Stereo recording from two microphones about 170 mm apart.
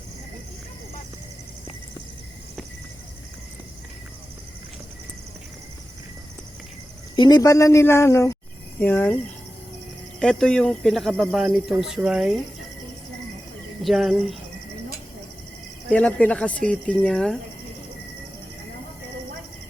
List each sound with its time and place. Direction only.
7.2 s speech: 25° left (ahead or behind)
10.2 s speech: 5° left (ahead or behind)
13.8 s speech: centre (ahead or behind)
15.9 s speech: 5° left (ahead or behind)